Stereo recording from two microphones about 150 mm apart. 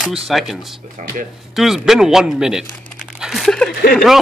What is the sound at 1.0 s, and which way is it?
Speech, 55° right (ahead or behind).